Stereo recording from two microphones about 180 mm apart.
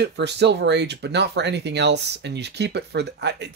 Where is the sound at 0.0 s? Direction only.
70° right (ahead or behind).